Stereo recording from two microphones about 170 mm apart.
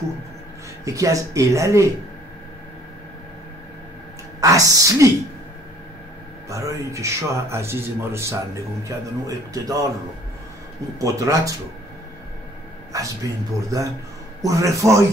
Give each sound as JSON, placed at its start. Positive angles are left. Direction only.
{"t": 0.8, "sound": "a man's voice", "side_deg": -20}
{"t": 4.4, "sound": "a man's voice", "side_deg": -20}
{"t": 6.5, "sound": "a man's voice", "side_deg": -20}
{"t": 11.0, "sound": "a man's voice", "side_deg": -20}
{"t": 12.9, "sound": "a man's voice", "side_deg": -20}